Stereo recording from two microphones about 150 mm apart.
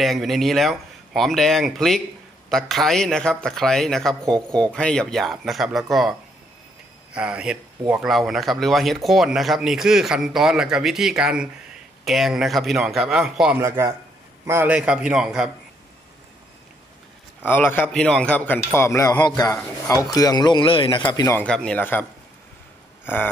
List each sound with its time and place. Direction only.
0.0 s speech: centre (ahead or behind)
7.2 s speech: 5° right (ahead or behind)
13.6 s a man's voice: 15° right (ahead or behind)
17.5 s a man's voice: 15° left (ahead or behind); by 21.4 s 30° left (ahead or behind)
21.4 s a man's voice: 5° left (ahead or behind)